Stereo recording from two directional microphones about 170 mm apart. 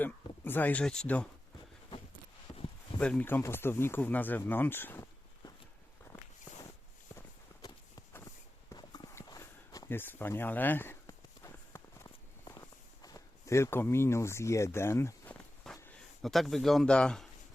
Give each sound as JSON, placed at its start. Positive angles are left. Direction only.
{"t": 0.0, "sound": "speech", "side_deg": 10}
{"t": 2.5, "sound": "a sound", "side_deg": 20}
{"t": 3.0, "sound": "speech", "side_deg": 10}
{"t": 6.1, "sound": "walk", "side_deg": 15}
{"t": 7.6, "sound": "walk", "side_deg": 20}
{"t": 8.7, "sound": "a sound", "side_deg": 25}